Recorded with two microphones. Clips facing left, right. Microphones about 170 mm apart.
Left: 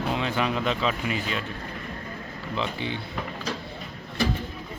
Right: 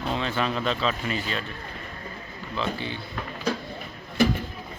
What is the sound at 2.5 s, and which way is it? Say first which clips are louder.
Speech: even; 20° left (ahead or behind).